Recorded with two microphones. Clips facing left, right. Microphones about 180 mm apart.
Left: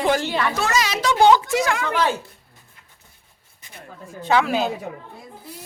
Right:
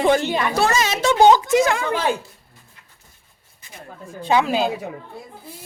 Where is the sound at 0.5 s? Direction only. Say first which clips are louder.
Right 3 dB; 30° right (ahead or behind).